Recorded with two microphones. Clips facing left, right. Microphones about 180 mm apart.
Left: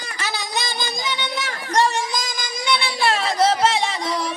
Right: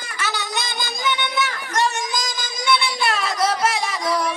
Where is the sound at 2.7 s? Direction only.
30° left (ahead or behind).